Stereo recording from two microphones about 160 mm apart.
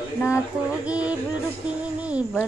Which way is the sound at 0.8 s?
10° right (ahead or behind).